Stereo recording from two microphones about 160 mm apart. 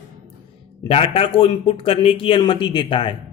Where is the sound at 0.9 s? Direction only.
40° left (ahead or behind).